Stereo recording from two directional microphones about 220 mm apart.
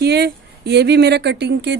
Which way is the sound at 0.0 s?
50° right (ahead or behind).